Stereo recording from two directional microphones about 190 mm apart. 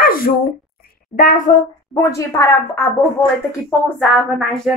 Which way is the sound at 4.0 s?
Centre (ahead or behind).